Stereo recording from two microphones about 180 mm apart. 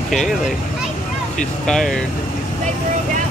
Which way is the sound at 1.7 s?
Centre (ahead or behind).